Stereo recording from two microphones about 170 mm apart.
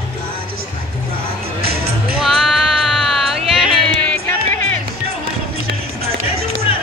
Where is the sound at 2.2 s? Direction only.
Centre (ahead or behind).